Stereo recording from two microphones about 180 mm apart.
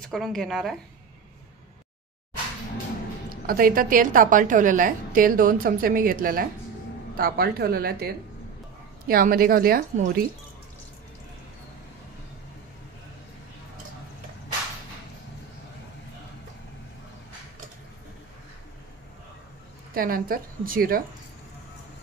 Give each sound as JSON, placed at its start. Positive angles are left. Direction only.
{"t": 0.1, "sound": "speech", "side_deg": 0}
{"t": 3.3, "sound": "a woman's voice", "side_deg": -55}
{"t": 19.9, "sound": "a woman's voice", "side_deg": -55}